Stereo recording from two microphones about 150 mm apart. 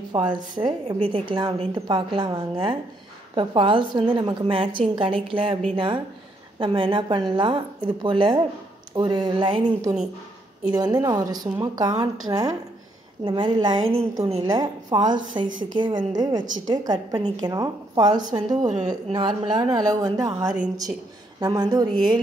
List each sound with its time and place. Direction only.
0.1 s a woman's voice: 30° right (ahead or behind)
6.6 s a woman's voice: 35° right (ahead or behind)